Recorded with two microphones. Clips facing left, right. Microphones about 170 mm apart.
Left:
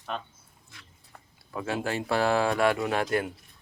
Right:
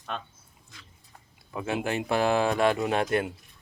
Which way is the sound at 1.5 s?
20° right (ahead or behind).